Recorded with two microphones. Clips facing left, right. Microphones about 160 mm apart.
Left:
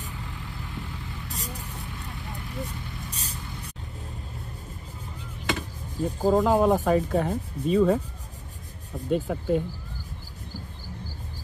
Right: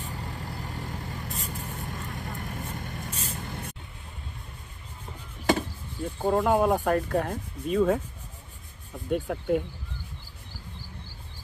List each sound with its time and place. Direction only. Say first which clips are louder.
0.0 s vehicle: right 2 dB; 40° right (ahead or behind)
3.1 s spray: right 3 dB; 35° left (ahead or behind)
3.3 s vehicle: right 3 dB; 55° right (ahead or behind)
5.9 s speech: left 3 dB; centre (ahead or behind)
9.1 s speech: left 1 dB; 5° right (ahead or behind)